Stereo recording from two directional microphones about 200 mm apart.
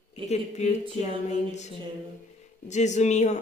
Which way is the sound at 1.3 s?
35° left (ahead or behind).